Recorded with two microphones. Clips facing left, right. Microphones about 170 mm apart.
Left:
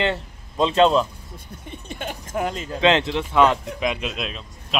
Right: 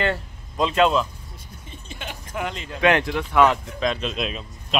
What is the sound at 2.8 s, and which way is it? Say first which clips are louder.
Speech: left 1 dB; 20° left (ahead or behind).